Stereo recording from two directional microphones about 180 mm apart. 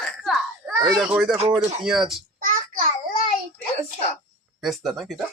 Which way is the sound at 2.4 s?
50° right (ahead or behind).